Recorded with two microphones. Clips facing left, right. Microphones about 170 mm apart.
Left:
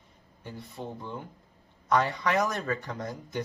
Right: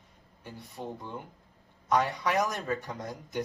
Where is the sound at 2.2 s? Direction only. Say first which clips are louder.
Left 2 dB; 15° right (ahead or behind).